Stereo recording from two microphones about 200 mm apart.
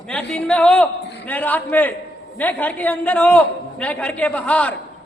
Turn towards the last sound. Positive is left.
turn(degrees=5)  # may be behind; listen again after turning